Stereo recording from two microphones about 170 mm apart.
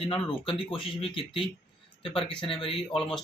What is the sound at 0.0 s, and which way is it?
Speech, 30° left (ahead or behind).